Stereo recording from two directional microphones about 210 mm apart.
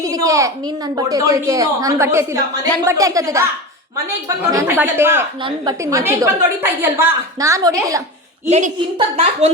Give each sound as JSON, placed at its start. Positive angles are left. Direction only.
{"t": 0.0, "sound": "a woman's voice", "side_deg": -15}
{"t": 4.5, "sound": "a woman's voice", "side_deg": -10}
{"t": 5.4, "sound": "a woman's voice", "side_deg": -20}
{"t": 8.4, "sound": "a woman's voice", "side_deg": -30}